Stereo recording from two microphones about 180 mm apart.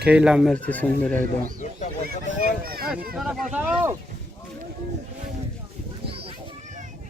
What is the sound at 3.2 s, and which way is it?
Speech, 5° right (ahead or behind).